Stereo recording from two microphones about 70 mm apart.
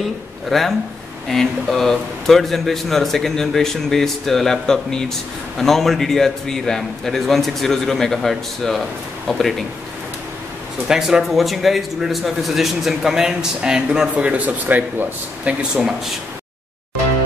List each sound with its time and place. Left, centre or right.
0.5 s a man's voice: centre
10.9 s a man's voice: centre
14.1 s speech: right